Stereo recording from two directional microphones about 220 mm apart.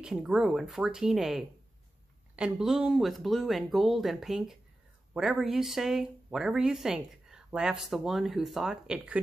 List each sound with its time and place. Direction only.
0.0 s speech: 5° right (ahead or behind)